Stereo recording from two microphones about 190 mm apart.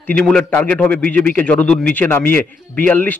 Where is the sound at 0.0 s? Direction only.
5° left (ahead or behind).